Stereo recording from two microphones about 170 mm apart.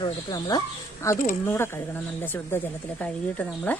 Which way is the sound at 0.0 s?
25° left (ahead or behind).